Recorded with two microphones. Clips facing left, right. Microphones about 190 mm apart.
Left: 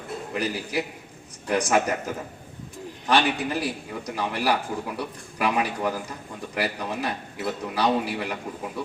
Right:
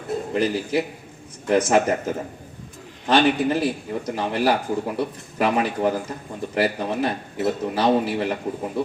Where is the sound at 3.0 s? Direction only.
25° right (ahead or behind).